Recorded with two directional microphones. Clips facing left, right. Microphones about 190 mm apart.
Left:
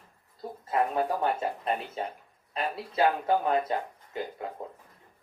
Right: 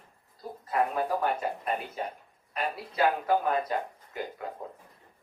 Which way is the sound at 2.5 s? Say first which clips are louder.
Left 1 dB; 25° left (ahead or behind).